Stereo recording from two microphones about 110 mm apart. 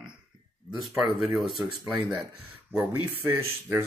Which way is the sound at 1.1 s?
Centre (ahead or behind).